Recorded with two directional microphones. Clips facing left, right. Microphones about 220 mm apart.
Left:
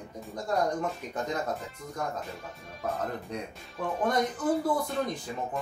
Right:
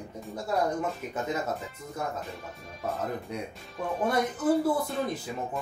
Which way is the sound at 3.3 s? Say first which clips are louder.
Right 1 dB; 5° right (ahead or behind).